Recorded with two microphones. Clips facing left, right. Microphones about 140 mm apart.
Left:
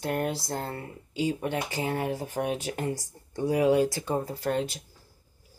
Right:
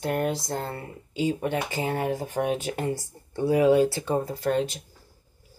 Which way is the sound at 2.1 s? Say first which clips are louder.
Right 3 dB; 40° right (ahead or behind).